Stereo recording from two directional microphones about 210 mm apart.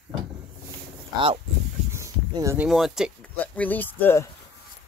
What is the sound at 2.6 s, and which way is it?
Speech, centre (ahead or behind).